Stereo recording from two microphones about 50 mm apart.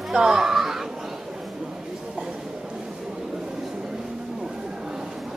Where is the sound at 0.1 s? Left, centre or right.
Centre.